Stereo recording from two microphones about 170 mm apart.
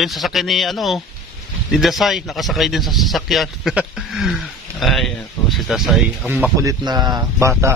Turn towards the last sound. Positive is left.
turn(degrees=-20)  # may be behind; listen again after turning